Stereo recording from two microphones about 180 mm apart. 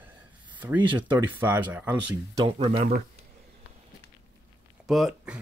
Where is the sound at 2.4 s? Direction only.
30° right (ahead or behind).